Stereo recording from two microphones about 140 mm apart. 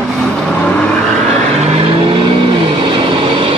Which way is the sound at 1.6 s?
45° right (ahead or behind).